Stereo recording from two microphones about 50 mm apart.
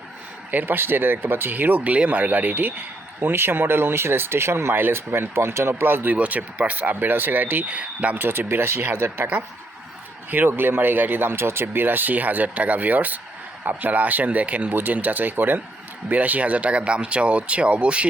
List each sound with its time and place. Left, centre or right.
0.5 s speech: right
6.1 s speech: right
8.2 s speech: right
10.3 s speech: right